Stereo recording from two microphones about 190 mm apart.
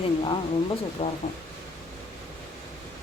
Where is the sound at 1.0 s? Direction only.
30° left (ahead or behind).